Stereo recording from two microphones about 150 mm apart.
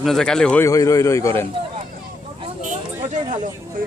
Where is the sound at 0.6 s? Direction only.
25° left (ahead or behind).